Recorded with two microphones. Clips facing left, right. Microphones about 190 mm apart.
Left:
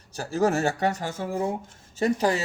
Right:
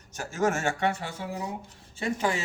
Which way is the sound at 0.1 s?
35° left (ahead or behind).